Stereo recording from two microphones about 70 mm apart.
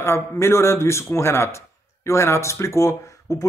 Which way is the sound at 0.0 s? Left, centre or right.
Left.